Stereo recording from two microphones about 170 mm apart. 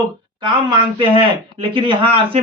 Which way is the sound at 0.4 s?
25° right (ahead or behind).